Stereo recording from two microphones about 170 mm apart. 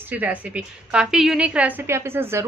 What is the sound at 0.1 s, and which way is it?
A woman's voice, 10° right (ahead or behind).